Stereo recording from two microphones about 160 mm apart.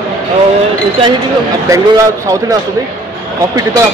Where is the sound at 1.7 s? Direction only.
20° right (ahead or behind).